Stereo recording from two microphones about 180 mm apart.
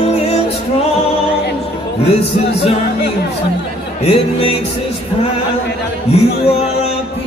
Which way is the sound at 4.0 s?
35° left (ahead or behind).